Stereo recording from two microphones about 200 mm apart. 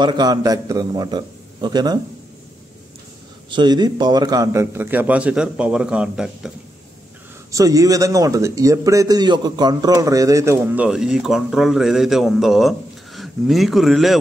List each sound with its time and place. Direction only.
0.0 s a man's voice: 20° right (ahead or behind)
3.4 s a man's voice: 20° right (ahead or behind); by 6.5 s 5° right (ahead or behind)
7.5 s a man's voice: 15° right (ahead or behind); by 14.1 s centre (ahead or behind)